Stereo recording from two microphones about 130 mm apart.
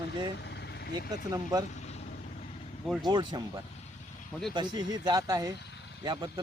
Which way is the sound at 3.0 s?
35° right (ahead or behind).